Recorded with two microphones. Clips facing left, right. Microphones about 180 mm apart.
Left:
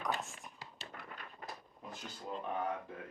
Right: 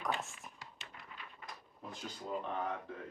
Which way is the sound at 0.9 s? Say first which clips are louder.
Left 4 dB; 50° left (ahead or behind).